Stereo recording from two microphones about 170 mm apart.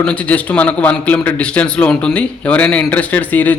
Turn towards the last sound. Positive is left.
turn(degrees=10)  # may be behind; listen again after turning